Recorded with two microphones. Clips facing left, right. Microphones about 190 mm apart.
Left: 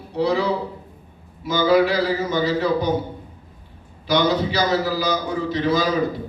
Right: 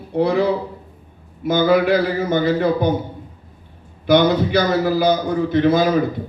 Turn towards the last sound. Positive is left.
turn(degrees=-55)  # may be behind; listen again after turning